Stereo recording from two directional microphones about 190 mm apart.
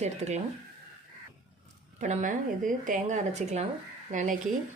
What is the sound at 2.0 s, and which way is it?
A woman's voice, 45° right (ahead or behind).